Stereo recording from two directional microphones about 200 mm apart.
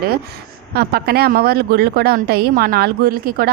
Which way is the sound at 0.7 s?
50° right (ahead or behind).